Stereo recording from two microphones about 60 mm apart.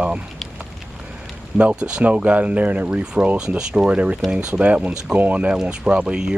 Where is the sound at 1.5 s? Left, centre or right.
Centre.